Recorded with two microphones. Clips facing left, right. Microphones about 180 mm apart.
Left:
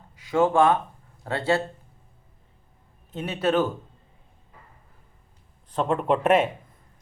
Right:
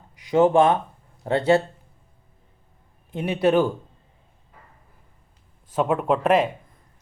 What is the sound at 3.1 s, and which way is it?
Speech, 15° right (ahead or behind).